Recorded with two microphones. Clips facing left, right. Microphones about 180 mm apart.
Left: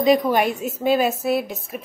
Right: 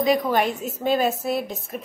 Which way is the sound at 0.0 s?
15° left (ahead or behind).